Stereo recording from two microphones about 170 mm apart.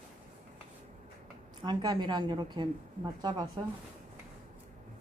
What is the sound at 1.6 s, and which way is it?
A woman's voice, 25° right (ahead or behind).